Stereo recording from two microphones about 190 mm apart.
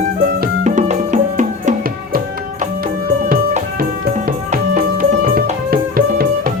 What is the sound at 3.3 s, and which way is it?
Music, 50° right (ahead or behind).